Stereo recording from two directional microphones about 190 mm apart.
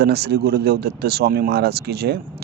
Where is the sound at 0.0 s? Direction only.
60° right (ahead or behind).